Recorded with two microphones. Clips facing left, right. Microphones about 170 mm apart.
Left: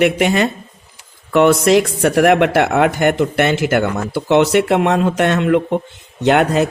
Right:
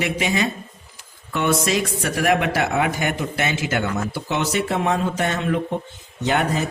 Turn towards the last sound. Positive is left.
turn(degrees=70)  # may be behind; listen again after turning